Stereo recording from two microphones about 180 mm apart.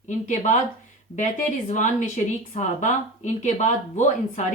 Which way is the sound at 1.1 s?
45° left (ahead or behind).